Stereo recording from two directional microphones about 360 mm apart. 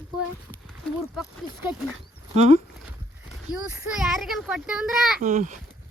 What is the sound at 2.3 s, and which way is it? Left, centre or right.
Speech, centre.